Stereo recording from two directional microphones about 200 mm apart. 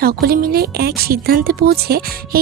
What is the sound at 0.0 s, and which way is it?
A woman's voice, 50° right (ahead or behind).